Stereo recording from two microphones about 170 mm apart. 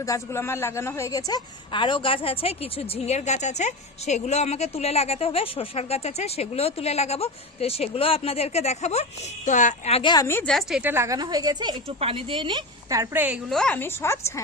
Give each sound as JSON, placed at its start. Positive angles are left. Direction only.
{"t": 0.0, "sound": "a woman's voice", "side_deg": 15}
{"t": 10.0, "sound": "a woman's voice", "side_deg": 25}
{"t": 10.2, "sound": "a woman's voice", "side_deg": 15}
{"t": 10.5, "sound": "a woman's voice", "side_deg": -5}
{"t": 13.5, "sound": "a woman's voice", "side_deg": 5}